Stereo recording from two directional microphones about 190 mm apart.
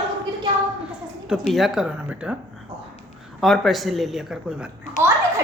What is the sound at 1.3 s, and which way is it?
Speech, centre (ahead or behind).